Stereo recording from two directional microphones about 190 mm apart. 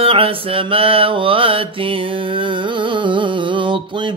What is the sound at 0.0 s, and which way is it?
Mantra, 30° right (ahead or behind).